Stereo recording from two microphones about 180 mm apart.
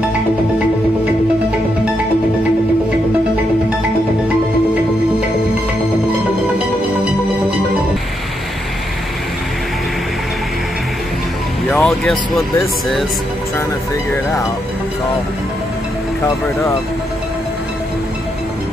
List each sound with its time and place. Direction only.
11.7 s music: centre (ahead or behind)
16.3 s speech: 15° left (ahead or behind)